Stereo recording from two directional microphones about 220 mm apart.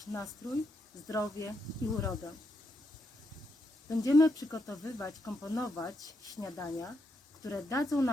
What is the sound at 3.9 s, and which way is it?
Speech, 15° left (ahead or behind).